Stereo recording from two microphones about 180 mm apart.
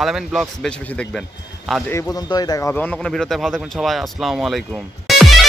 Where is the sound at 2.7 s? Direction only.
10° left (ahead or behind).